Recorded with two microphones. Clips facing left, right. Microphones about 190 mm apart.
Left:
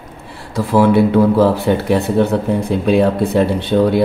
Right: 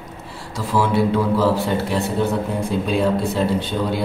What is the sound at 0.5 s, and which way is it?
Speech, 60° left (ahead or behind).